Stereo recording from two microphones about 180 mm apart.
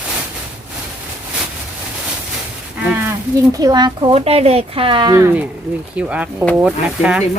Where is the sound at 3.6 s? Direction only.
25° right (ahead or behind).